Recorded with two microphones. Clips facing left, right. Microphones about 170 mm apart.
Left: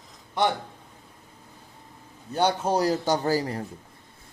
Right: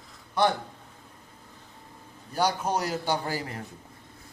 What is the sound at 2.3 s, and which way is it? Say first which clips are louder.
A man's voice: left 3 dB; 30° left (ahead or behind).